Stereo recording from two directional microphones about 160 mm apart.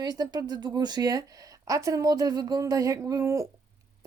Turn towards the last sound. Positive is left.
turn(degrees=-20)  # may be behind; listen again after turning